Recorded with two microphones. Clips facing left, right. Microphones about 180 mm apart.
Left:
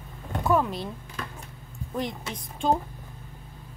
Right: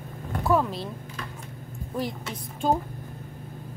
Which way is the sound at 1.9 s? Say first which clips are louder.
Even; 5° right (ahead or behind).